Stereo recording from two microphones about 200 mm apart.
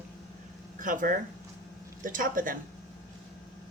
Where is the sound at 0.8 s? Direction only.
40° right (ahead or behind).